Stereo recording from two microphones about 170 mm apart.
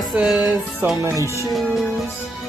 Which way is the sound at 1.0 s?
15° right (ahead or behind).